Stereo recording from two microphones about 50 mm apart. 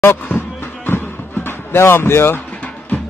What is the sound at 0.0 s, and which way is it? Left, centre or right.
Speech, left.